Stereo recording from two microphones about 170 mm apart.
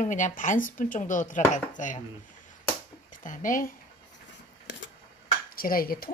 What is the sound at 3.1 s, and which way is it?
Speech, 50° left (ahead or behind).